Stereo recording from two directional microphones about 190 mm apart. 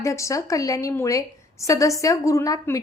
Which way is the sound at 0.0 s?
15° left (ahead or behind).